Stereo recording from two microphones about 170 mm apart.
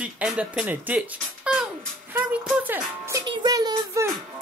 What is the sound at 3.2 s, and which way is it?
Child singing, 25° right (ahead or behind).